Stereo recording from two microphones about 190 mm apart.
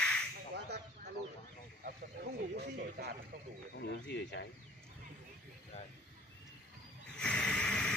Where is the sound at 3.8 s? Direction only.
60° left (ahead or behind).